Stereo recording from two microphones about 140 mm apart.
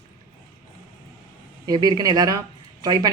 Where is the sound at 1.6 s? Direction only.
30° right (ahead or behind).